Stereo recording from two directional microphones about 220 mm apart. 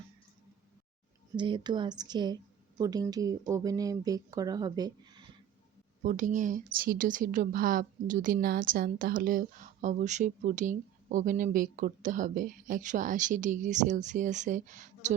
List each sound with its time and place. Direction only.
1.4 s a woman's voice: 20° right (ahead or behind)
6.0 s speech: 35° right (ahead or behind)